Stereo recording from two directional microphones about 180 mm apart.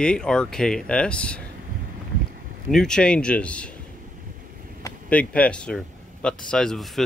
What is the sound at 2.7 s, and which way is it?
Speech, 5° left (ahead or behind).